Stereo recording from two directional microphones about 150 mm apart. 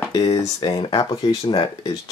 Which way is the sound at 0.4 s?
25° left (ahead or behind).